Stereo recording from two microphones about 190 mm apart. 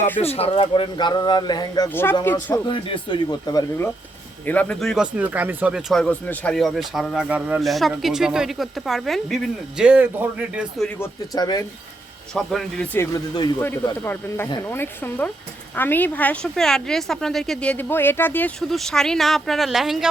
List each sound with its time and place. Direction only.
0.2 s speech: 30° left (ahead or behind); by 2.6 s 10° left (ahead or behind)
2.6 s speech: 25° left (ahead or behind)
4.4 s speech: 5° left (ahead or behind)
11.3 s speech: 20° left (ahead or behind)
12.3 s speech: centre (ahead or behind)